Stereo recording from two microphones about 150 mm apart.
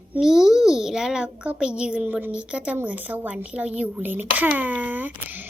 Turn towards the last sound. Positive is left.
turn(degrees=-10)  # may be behind; listen again after turning